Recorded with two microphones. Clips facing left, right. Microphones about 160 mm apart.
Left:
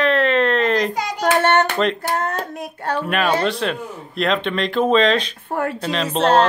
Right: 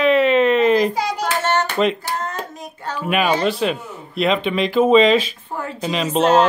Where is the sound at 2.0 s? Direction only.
55° left (ahead or behind).